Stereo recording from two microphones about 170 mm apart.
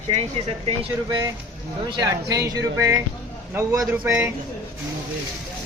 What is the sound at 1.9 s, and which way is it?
A man's voice, 20° right (ahead or behind).